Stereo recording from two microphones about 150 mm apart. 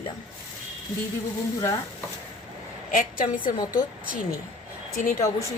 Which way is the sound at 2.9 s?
65° left (ahead or behind).